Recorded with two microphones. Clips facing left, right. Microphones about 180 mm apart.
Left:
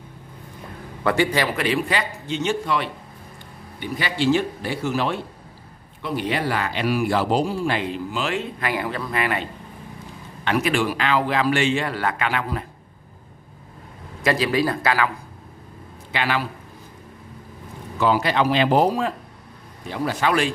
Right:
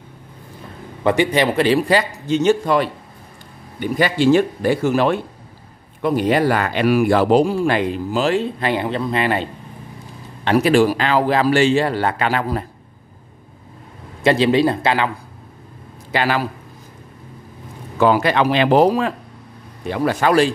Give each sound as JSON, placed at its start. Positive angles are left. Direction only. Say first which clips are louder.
{"t": 1.0, "sound": "a man's voice", "louder": "right 4 dB", "side_deg": -20}
{"t": 14.2, "sound": "speech", "louder": "right 6 dB", "side_deg": -25}
{"t": 16.1, "sound": "a man's voice", "louder": "right 5 dB", "side_deg": -40}
{"t": 17.9, "sound": "speech", "louder": "right 5 dB", "side_deg": -55}
{"t": 19.9, "sound": "speech", "louder": "right 5 dB", "side_deg": -50}